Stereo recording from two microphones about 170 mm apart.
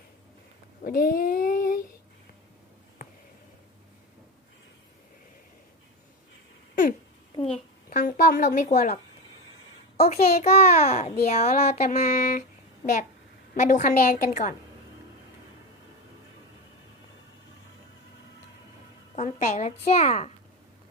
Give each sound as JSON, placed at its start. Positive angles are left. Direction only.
{"t": 0.9, "sound": "child singing", "side_deg": 60}
{"t": 7.5, "sound": "speech", "side_deg": 50}
{"t": 10.1, "sound": "a woman's voice", "side_deg": 40}
{"t": 19.1, "sound": "a woman's voice", "side_deg": 40}